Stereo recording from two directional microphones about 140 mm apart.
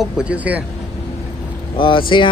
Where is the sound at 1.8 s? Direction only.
35° left (ahead or behind).